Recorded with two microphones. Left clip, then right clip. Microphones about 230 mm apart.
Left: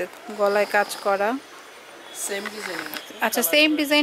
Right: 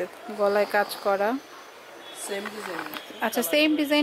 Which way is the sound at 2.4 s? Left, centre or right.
Right.